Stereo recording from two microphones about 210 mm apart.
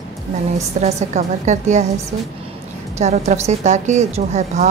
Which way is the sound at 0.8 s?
30° right (ahead or behind).